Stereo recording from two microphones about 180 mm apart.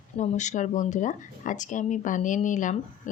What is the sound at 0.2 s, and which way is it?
Speech, 40° left (ahead or behind).